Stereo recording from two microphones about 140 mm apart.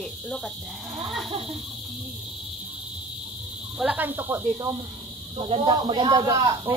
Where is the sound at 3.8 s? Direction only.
10° right (ahead or behind).